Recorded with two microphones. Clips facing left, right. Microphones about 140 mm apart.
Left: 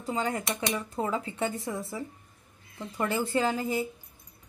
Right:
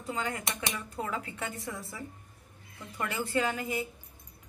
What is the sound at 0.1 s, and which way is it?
Speech, 30° left (ahead or behind).